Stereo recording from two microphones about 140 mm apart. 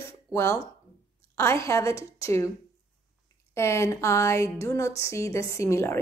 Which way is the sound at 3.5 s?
20° left (ahead or behind).